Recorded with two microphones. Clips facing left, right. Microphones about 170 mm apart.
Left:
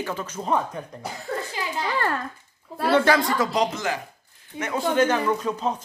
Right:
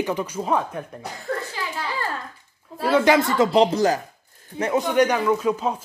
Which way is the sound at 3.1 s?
25° right (ahead or behind).